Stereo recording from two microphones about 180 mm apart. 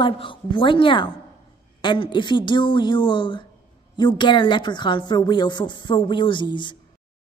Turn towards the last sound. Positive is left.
turn(degrees=25)  # may be behind; listen again after turning